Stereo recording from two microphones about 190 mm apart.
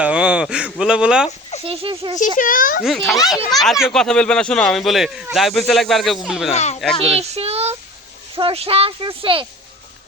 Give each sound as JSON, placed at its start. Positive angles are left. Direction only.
{"t": 0.0, "sound": "speech", "side_deg": -5}
{"t": 1.6, "sound": "speech", "side_deg": -30}
{"t": 2.1, "sound": "a child's voice", "side_deg": 45}
{"t": 2.8, "sound": "speech", "side_deg": 0}
{"t": 6.5, "sound": "speech", "side_deg": 35}
{"t": 7.0, "sound": "child singing", "side_deg": -35}
{"t": 8.4, "sound": "speech", "side_deg": -30}